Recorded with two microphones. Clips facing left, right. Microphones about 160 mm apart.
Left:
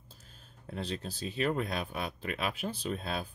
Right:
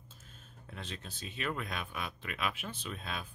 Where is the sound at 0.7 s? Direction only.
35° left (ahead or behind).